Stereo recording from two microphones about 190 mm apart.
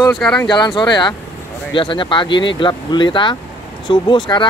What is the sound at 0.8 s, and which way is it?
Speech, 25° left (ahead or behind).